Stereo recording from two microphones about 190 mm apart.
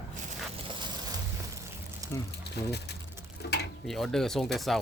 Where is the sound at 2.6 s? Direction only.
60° left (ahead or behind).